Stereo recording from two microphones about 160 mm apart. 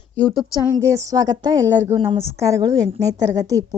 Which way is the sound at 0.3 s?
20° left (ahead or behind).